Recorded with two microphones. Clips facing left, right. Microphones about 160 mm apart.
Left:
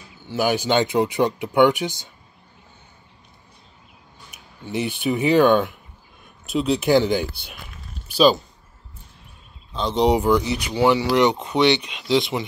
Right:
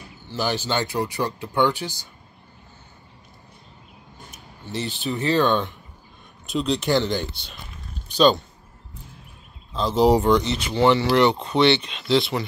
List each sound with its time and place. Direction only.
0.3 s speech: 10° left (ahead or behind)
4.6 s speech: 15° left (ahead or behind)
9.7 s speech: centre (ahead or behind); by 12.4 s 15° left (ahead or behind)